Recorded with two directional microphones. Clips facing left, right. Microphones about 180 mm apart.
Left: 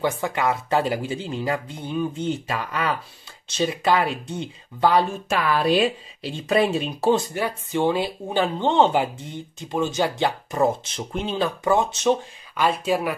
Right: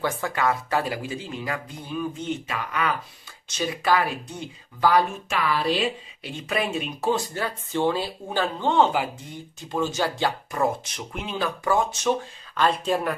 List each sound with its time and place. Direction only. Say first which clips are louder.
0.0 s speech: left 2 dB; 20° left (ahead or behind)
5.3 s speech: left 5 dB; 50° left (ahead or behind)
6.2 s speech: left 7 dB; 30° left (ahead or behind)
7.3 s speech: left 3 dB; 15° left (ahead or behind)
12.5 s speech: left 1 dB; 5° left (ahead or behind)